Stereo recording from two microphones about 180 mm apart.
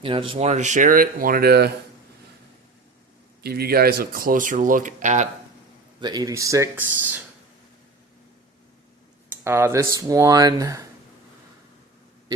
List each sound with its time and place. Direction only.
0.0 s speech: 30° right (ahead or behind); by 1.7 s 60° right (ahead or behind)
3.4 s speech: 60° right (ahead or behind); by 5.3 s 40° right (ahead or behind)
6.0 s speech: 20° right (ahead or behind)
9.4 s speech: 15° right (ahead or behind)